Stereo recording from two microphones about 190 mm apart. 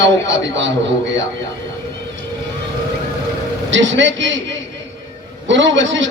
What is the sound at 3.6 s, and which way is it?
A man's voice, 75° right (ahead or behind).